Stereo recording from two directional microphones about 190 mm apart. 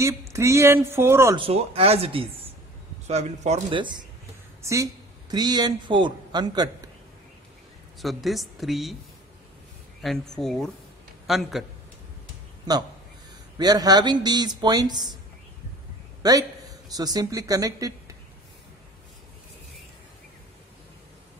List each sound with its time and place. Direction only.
0.0 s speech: 15° right (ahead or behind)
1.3 s speech: 30° right (ahead or behind)
3.7 s a man's voice: 25° right (ahead or behind)
8.0 s speech: centre (ahead or behind)
10.0 s speech: centre (ahead or behind)
13.6 s speech: 20° right (ahead or behind)
16.2 s a man's voice: 20° right (ahead or behind)